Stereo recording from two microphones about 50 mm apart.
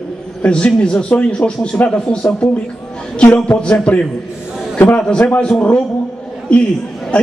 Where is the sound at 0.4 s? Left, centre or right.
Left.